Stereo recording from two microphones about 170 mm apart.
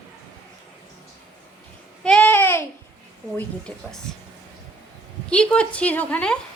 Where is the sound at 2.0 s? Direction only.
5° left (ahead or behind).